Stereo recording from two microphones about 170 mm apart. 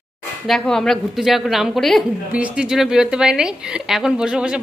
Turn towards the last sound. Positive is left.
turn(degrees=-5)  # may be behind; listen again after turning